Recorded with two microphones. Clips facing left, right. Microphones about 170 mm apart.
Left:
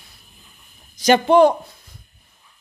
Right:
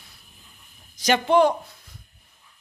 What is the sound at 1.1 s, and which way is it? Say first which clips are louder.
Speech: left 5 dB; 40° left (ahead or behind).